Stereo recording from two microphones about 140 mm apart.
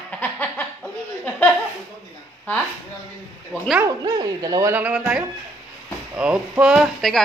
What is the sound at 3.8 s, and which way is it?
Speech, 25° right (ahead or behind).